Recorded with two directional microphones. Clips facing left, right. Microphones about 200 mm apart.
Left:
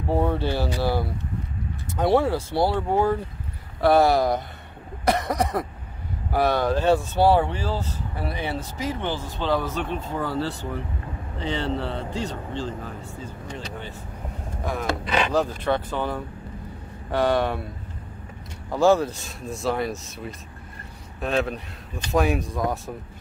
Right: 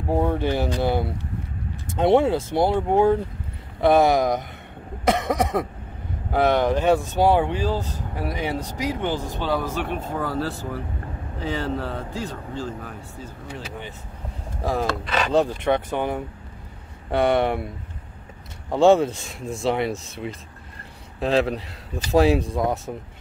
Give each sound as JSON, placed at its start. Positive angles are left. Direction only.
{"t": 0.1, "sound": "a man's voice", "side_deg": -15}
{"t": 14.6, "sound": "speech", "side_deg": -30}
{"t": 15.3, "sound": "a man's voice", "side_deg": -20}
{"t": 18.7, "sound": "a man's voice", "side_deg": -25}
{"t": 21.2, "sound": "a man's voice", "side_deg": -30}